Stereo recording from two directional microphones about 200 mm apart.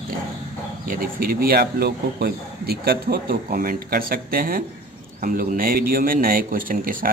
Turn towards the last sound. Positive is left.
turn(degrees=-45)  # may be behind; listen again after turning